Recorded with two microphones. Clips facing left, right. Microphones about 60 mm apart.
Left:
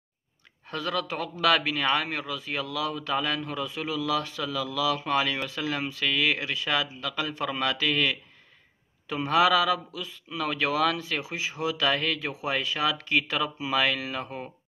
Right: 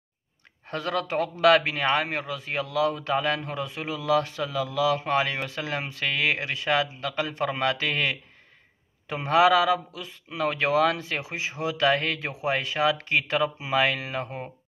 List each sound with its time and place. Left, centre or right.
0.7 s a man's voice: right